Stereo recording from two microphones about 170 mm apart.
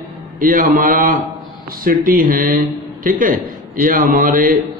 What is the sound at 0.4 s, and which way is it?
A man's voice, 50° right (ahead or behind).